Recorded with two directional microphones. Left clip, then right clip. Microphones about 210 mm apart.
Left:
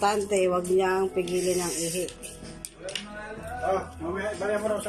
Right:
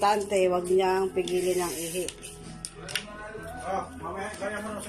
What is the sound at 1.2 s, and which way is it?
Speech, 30° right (ahead or behind).